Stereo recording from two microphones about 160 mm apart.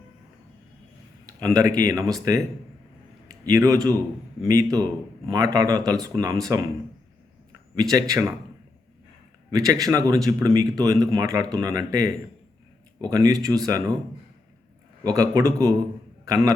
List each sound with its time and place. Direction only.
1.3 s a man's voice: 20° right (ahead or behind)
7.8 s speech: 20° right (ahead or behind)
9.5 s speech: 20° right (ahead or behind)
15.0 s a man's voice: 20° right (ahead or behind)